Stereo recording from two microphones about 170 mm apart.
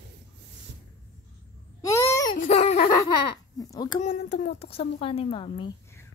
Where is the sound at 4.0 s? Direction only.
40° left (ahead or behind).